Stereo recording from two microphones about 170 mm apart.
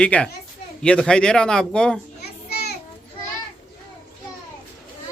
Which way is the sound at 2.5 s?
70° left (ahead or behind).